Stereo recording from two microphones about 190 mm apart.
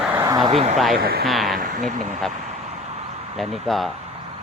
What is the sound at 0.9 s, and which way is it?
Speech, 50° right (ahead or behind).